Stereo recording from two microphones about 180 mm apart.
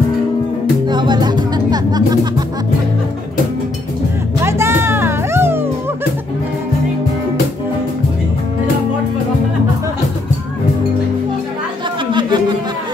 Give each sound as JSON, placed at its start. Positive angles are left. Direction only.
{"t": 0.8, "sound": "music", "side_deg": -25}
{"t": 4.4, "sound": "music", "side_deg": -15}
{"t": 12.1, "sound": "a sound", "side_deg": -25}